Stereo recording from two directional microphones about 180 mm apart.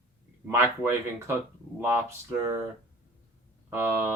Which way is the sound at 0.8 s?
10° right (ahead or behind).